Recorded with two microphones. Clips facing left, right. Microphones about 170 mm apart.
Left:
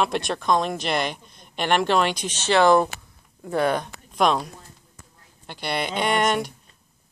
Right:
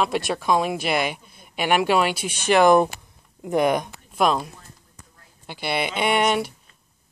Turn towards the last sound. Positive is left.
turn(degrees=-5)  # may be behind; listen again after turning